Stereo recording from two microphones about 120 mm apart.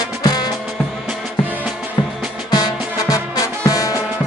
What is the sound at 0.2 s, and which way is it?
Music, 35° left (ahead or behind).